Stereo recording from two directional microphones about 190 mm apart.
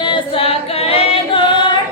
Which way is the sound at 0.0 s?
25° left (ahead or behind).